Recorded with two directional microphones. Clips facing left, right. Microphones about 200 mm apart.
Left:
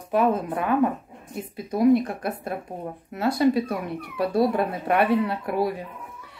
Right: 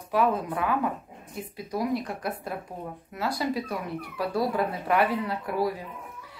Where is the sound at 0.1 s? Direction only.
25° left (ahead or behind).